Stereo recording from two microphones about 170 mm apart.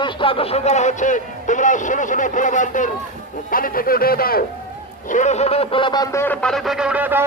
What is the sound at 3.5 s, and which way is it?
Speech, 60° left (ahead or behind).